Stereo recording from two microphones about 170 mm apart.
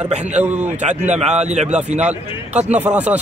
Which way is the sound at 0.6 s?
45° right (ahead or behind).